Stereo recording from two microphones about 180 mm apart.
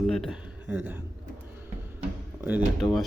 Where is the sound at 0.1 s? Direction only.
Centre (ahead or behind).